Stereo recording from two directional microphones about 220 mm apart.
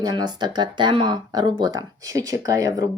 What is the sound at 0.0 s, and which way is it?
Speech, 20° right (ahead or behind).